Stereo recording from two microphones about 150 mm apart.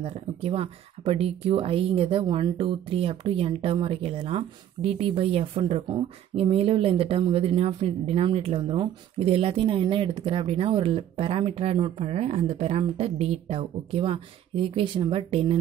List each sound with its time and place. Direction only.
0.0 s speech: 40° right (ahead or behind)